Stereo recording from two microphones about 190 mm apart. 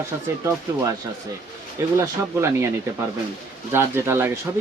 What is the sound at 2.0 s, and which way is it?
Speech, 15° right (ahead or behind).